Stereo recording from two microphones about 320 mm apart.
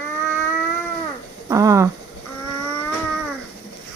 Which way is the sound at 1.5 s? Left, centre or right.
Centre.